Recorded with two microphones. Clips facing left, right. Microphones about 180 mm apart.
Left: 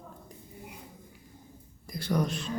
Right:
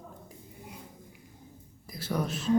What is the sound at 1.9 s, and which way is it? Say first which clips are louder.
Speech: left 3 dB; 5° right (ahead or behind).